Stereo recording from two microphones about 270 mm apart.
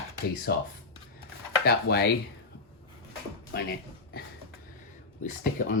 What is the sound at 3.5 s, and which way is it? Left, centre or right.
Music, left.